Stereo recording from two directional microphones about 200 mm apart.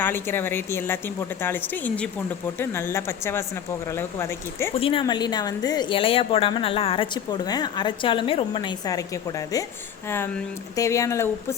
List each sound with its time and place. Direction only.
0.0 s speech: 10° left (ahead or behind)
4.7 s a woman's voice: 25° left (ahead or behind)
10.1 s speech: 10° left (ahead or behind)